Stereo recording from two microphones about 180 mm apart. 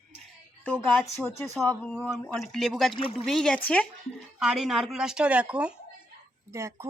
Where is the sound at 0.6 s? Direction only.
5° left (ahead or behind).